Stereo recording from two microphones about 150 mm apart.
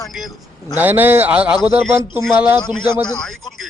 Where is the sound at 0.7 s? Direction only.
10° right (ahead or behind).